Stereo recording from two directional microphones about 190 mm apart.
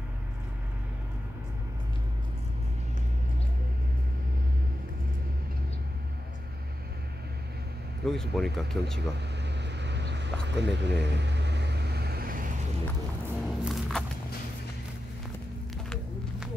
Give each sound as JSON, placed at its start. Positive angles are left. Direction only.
{"t": 8.0, "sound": "speech", "side_deg": 0}
{"t": 9.4, "sound": "vehicle", "side_deg": -65}
{"t": 13.4, "sound": "music", "side_deg": 0}